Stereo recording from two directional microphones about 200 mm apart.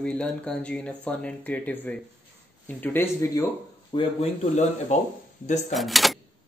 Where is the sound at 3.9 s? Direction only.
30° left (ahead or behind).